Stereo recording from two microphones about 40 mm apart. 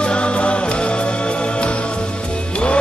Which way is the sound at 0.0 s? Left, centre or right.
Left.